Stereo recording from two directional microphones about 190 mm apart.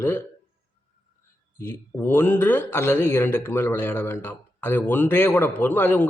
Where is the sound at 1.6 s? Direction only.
10° left (ahead or behind).